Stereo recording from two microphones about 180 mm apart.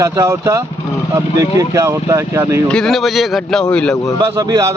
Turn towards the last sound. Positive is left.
turn(degrees=-15)  # may be behind; listen again after turning